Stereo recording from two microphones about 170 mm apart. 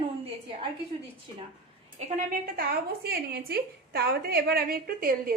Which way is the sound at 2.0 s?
55° right (ahead or behind).